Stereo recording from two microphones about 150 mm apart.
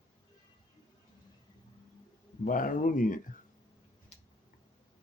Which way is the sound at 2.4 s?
65° left (ahead or behind).